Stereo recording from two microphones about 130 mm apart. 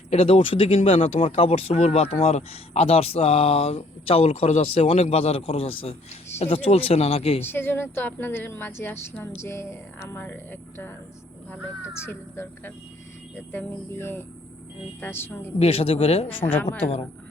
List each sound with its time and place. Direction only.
0.1 s speech: 50° left (ahead or behind); by 1.3 s 65° left (ahead or behind)
1.4 s speech: 50° left (ahead or behind)
7.4 s a woman's voice: 15° left (ahead or behind)
12.0 s a woman's voice: 20° left (ahead or behind)
15.5 s speech: 50° left (ahead or behind)